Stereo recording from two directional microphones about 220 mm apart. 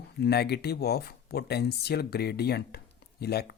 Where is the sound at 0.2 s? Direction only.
50° left (ahead or behind).